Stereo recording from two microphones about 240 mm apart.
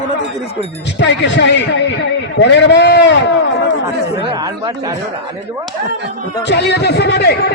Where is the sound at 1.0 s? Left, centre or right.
Left.